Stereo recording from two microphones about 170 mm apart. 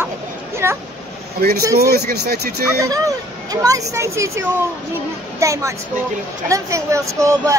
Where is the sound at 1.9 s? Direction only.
70° right (ahead or behind).